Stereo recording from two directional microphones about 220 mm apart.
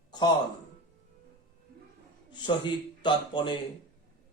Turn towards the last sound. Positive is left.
turn(degrees=20)  # may be behind; listen again after turning